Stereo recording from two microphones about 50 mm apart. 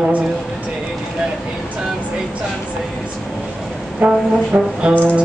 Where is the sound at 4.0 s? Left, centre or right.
Right.